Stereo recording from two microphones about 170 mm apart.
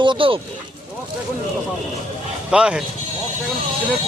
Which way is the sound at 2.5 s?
5° right (ahead or behind).